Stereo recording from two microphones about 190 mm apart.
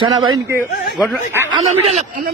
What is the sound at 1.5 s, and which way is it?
Speech, 35° right (ahead or behind).